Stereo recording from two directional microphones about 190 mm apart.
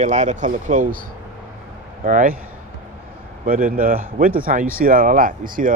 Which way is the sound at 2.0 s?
45° right (ahead or behind).